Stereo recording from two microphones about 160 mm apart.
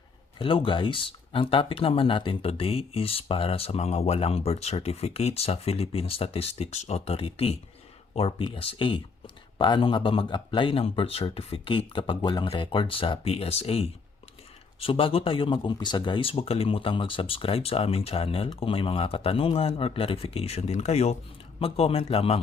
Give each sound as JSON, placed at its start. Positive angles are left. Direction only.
{"t": 0.3, "sound": "speech", "side_deg": 35}